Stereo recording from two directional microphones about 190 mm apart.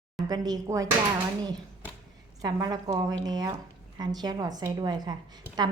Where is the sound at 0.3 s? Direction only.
20° right (ahead or behind).